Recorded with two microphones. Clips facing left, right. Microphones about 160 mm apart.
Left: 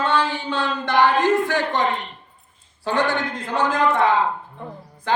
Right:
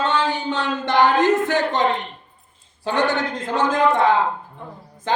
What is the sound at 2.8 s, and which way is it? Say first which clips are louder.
Speech: right 1 dB; 20° right (ahead or behind).